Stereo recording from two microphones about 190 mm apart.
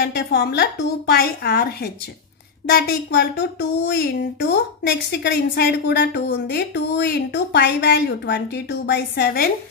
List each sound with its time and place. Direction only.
0.0 s speech: 60° left (ahead or behind)
2.7 s speech: 60° left (ahead or behind)